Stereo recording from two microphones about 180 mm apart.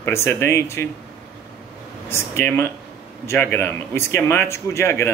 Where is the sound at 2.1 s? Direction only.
15° left (ahead or behind).